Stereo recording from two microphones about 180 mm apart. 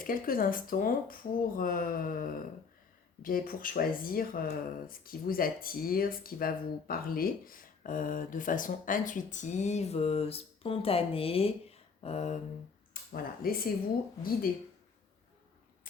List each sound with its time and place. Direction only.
0.0 s speech: 50° left (ahead or behind); by 11.5 s 30° left (ahead or behind)
12.0 s a sound: 40° left (ahead or behind)
12.9 s speech: 55° left (ahead or behind)